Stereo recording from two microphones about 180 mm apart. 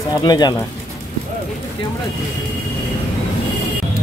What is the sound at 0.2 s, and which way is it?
Speech, 20° left (ahead or behind).